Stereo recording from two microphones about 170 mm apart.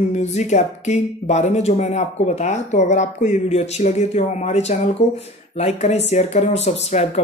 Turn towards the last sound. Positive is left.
turn(degrees=40)  # may be behind; listen again after turning